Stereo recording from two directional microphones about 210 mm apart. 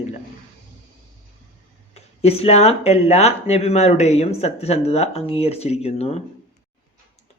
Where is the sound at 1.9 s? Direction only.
30° left (ahead or behind).